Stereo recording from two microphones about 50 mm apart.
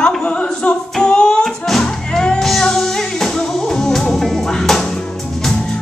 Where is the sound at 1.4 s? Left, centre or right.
Centre.